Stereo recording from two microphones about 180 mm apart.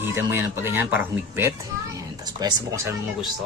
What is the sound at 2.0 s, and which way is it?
Speech, 20° right (ahead or behind).